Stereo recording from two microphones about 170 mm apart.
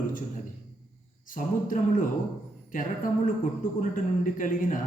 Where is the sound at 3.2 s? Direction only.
55° left (ahead or behind).